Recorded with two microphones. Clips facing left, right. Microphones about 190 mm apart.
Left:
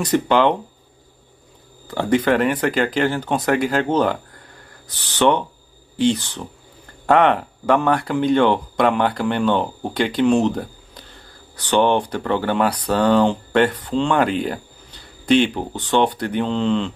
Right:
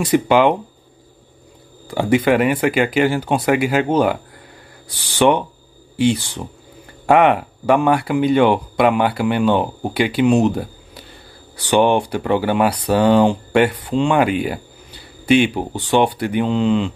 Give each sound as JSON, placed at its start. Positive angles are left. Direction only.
{"t": 0.0, "sound": "speech", "side_deg": -10}
{"t": 1.9, "sound": "speech", "side_deg": -10}